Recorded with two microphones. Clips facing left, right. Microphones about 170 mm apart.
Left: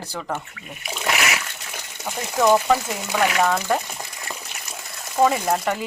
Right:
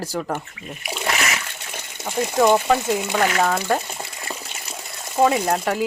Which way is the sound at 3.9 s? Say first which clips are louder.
Right 2 dB; 30° right (ahead or behind).